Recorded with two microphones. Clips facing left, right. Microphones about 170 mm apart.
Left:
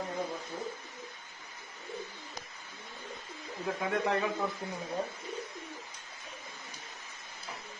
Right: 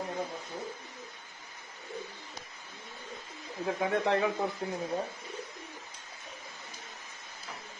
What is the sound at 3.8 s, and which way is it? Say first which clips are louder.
Speech: right 3 dB; 30° right (ahead or behind).